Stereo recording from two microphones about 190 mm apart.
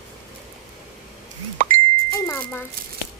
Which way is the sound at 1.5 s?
45° right (ahead or behind).